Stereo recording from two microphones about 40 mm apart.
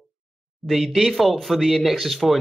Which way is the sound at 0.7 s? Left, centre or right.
Centre.